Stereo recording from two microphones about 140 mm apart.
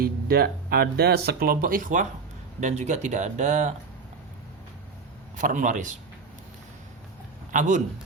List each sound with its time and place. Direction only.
0.0 s speech: 90° right; by 3.8 s 55° right (ahead or behind)
5.4 s speech: 65° right (ahead or behind)
7.5 s a man's voice: 60° right (ahead or behind)